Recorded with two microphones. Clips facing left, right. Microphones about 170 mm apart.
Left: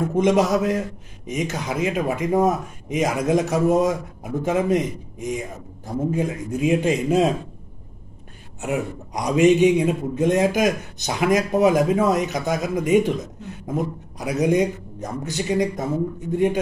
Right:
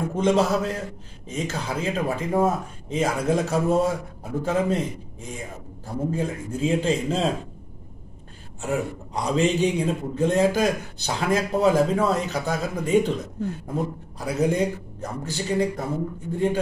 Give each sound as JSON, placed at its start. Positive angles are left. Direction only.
{"t": 0.2, "sound": "speech", "side_deg": 15}
{"t": 8.6, "sound": "speech", "side_deg": 15}